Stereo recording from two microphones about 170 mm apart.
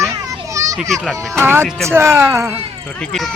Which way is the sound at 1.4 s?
15° right (ahead or behind).